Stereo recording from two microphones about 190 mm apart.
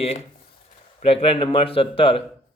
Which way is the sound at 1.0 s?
30° left (ahead or behind).